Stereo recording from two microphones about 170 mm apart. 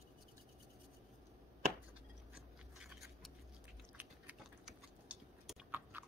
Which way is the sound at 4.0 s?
10° right (ahead or behind).